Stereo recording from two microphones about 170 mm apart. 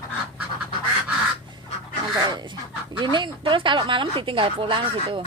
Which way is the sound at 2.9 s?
25° right (ahead or behind).